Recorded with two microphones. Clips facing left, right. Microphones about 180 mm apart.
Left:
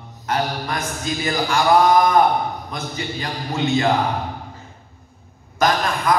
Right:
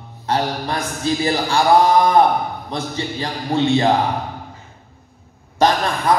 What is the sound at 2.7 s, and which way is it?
Mantra, 30° right (ahead or behind).